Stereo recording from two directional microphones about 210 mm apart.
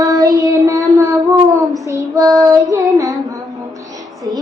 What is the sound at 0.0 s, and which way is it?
Child singing, 15° right (ahead or behind).